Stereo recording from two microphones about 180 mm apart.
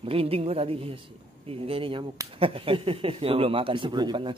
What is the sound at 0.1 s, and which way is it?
Speech, 30° right (ahead or behind).